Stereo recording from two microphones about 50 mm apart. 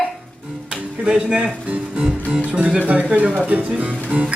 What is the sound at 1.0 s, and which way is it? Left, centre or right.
Speech, centre.